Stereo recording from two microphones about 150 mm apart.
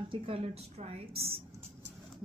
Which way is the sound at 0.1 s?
40° right (ahead or behind).